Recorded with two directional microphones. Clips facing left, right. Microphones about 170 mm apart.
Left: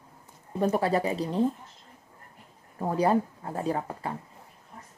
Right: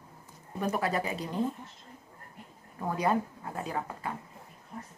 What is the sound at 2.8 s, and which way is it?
Speech, 30° left (ahead or behind).